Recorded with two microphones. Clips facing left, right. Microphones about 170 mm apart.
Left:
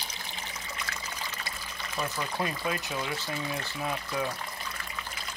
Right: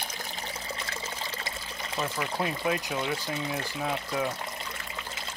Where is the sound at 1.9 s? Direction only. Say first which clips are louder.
Right 2 dB; 20° right (ahead or behind).